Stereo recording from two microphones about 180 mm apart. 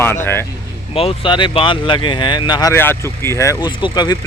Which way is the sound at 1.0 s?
30° left (ahead or behind).